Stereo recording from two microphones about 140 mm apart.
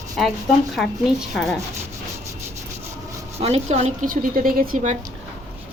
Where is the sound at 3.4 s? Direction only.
50° right (ahead or behind).